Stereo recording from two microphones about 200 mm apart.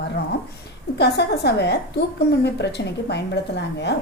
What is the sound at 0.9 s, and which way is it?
A woman's voice, 55° left (ahead or behind).